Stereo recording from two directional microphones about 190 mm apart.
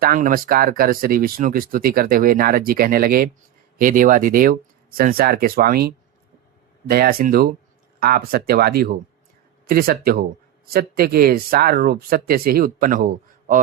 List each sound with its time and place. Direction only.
0.0 s speech: 45° right (ahead or behind)